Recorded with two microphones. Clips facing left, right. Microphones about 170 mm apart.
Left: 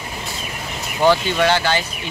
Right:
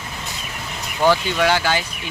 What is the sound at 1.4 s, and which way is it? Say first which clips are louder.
Speech: left 1 dB; 10° right (ahead or behind).